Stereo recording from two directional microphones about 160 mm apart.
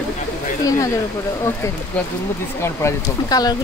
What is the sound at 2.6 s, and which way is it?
Speech, 20° left (ahead or behind).